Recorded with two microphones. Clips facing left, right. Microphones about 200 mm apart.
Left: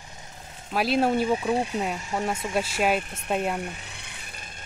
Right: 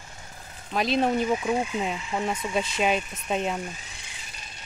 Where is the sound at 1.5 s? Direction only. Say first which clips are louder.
Left 1 dB; 35° left (ahead or behind).